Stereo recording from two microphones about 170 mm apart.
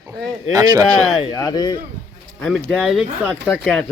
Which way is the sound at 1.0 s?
30° left (ahead or behind).